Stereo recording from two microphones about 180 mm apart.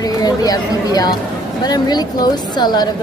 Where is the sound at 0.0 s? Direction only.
20° left (ahead or behind).